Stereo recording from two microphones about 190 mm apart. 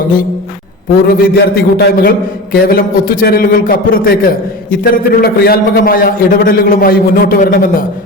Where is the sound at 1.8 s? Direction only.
50° left (ahead or behind).